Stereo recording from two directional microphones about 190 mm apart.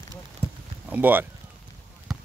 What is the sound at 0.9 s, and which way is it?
Speech, 10° right (ahead or behind).